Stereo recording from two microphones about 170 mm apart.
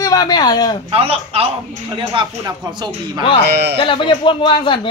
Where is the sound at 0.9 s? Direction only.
35° right (ahead or behind).